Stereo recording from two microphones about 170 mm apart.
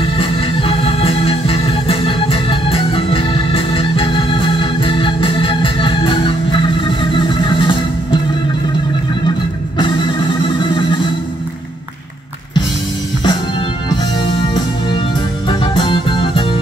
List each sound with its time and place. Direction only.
0.2 s organ: 35° left (ahead or behind)
6.8 s music: 30° left (ahead or behind)
10.6 s music: 25° left (ahead or behind)
13.8 s music: 25° left (ahead or behind)